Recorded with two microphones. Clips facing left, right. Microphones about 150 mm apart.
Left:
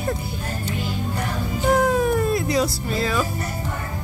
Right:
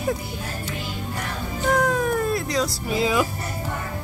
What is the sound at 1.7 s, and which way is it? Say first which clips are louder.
Cat: left 3 dB; 5° left (ahead or behind).